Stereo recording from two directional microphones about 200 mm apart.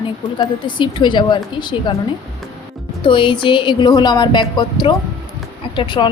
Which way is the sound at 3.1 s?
25° left (ahead or behind).